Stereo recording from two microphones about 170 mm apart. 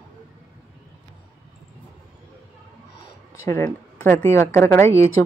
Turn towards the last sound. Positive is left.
turn(degrees=15)  # may be behind; listen again after turning